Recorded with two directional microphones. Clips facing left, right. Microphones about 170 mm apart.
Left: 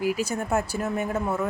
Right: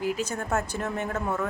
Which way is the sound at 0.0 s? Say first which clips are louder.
Left 3 dB; 10° left (ahead or behind).